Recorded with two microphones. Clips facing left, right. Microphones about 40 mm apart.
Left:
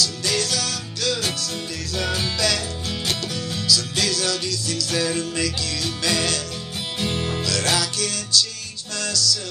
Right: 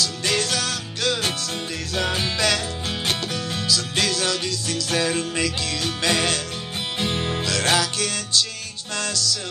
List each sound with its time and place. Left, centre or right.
0.0 s music: right
3.6 s music: right